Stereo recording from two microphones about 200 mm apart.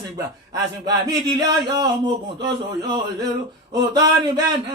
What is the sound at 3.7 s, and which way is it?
Speech, 20° right (ahead or behind).